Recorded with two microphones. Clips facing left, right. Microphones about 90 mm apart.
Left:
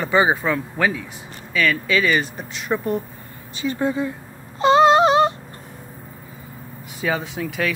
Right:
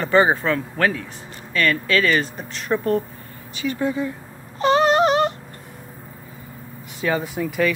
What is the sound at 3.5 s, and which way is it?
Speech, 30° left (ahead or behind).